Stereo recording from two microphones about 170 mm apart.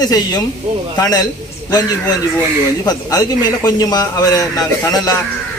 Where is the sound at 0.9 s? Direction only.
20° left (ahead or behind).